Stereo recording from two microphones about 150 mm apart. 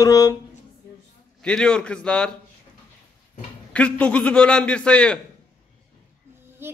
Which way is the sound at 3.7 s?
10° left (ahead or behind).